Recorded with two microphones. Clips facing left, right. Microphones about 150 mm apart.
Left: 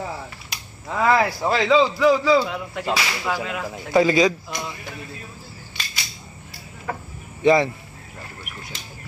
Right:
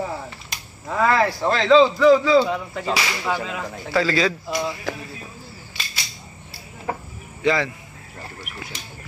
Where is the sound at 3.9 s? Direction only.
20° left (ahead or behind).